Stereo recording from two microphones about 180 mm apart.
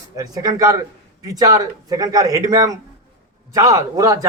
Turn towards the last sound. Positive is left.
turn(degrees=-20)  # may be behind; listen again after turning